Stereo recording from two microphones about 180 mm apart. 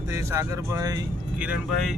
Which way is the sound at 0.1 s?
15° right (ahead or behind).